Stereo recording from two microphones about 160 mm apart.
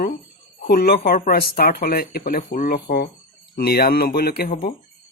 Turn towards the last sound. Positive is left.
turn(degrees=75)  # may be behind; listen again after turning